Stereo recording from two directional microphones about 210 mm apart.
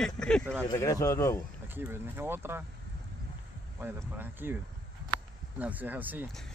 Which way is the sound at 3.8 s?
10° right (ahead or behind).